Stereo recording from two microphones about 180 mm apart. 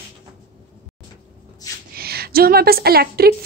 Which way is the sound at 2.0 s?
60° right (ahead or behind).